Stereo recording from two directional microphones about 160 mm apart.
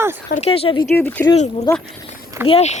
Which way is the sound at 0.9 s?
10° left (ahead or behind).